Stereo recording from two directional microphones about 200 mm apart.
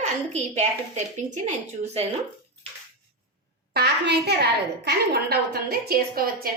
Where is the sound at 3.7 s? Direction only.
55° right (ahead or behind).